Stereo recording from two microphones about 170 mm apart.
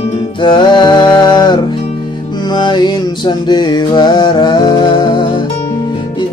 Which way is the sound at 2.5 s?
25° left (ahead or behind).